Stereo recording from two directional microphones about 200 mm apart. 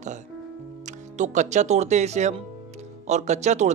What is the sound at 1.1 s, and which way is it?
Speech, 35° right (ahead or behind).